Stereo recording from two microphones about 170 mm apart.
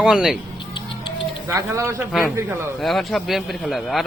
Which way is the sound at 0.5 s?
30° left (ahead or behind).